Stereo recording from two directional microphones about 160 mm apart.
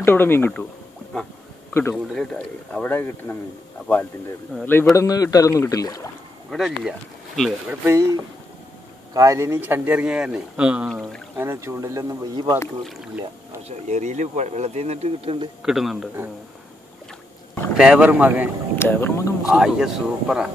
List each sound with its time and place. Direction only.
0.0 s speech: 15° left (ahead or behind)
1.7 s speech: 15° left (ahead or behind)
2.1 s speech: 5° left (ahead or behind); by 6.0 s 20° left (ahead or behind)
6.5 s speech: centre (ahead or behind)
7.8 s speech: 20° right (ahead or behind); by 11.2 s centre (ahead or behind)
11.3 s speech: 15° right (ahead or behind)
12.8 s speech: 5° right (ahead or behind)
13.7 s speech: 45° right (ahead or behind)
15.6 s speech: centre (ahead or behind)
17.7 s speech: 5° right (ahead or behind)
18.8 s speech: 15° left (ahead or behind)
19.5 s speech: 5° right (ahead or behind)